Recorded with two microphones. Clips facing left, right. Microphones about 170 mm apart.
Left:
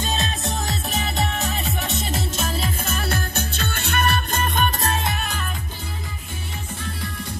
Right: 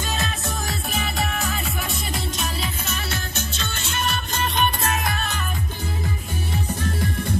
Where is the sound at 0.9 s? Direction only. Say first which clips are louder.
Left 1 dB; 20° left (ahead or behind).